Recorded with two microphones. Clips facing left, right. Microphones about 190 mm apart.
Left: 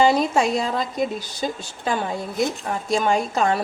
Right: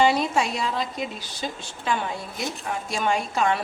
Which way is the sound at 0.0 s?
45° left (ahead or behind).